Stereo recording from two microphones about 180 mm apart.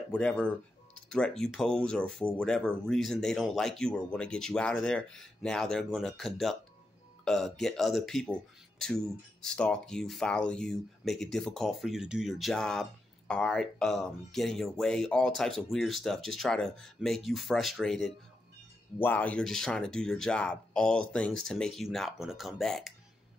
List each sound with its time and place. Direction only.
0.1 s speech: 5° left (ahead or behind)